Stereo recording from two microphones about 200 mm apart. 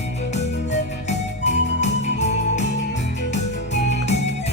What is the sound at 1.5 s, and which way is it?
Music, 35° left (ahead or behind).